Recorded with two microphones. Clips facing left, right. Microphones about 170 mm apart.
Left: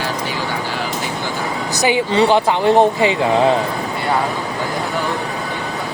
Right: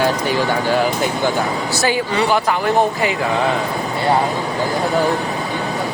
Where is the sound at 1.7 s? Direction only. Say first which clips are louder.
Left 5 dB; 20° left (ahead or behind).